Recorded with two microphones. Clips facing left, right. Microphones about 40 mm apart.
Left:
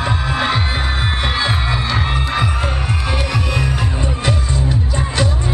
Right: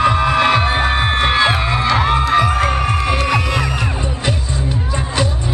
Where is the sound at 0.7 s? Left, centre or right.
Right.